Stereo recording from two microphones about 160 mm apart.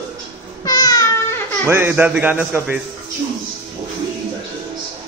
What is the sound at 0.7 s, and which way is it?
Music, 25° left (ahead or behind).